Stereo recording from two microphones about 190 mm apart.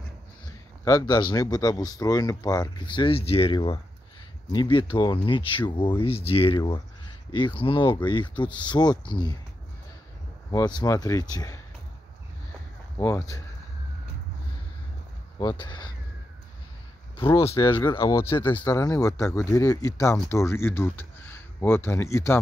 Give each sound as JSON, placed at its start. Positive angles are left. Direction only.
{"t": 0.8, "sound": "speech", "side_deg": 20}
{"t": 10.5, "sound": "speech", "side_deg": 20}
{"t": 12.9, "sound": "speech", "side_deg": 15}
{"t": 15.3, "sound": "speech", "side_deg": 25}
{"t": 17.5, "sound": "speech", "side_deg": 15}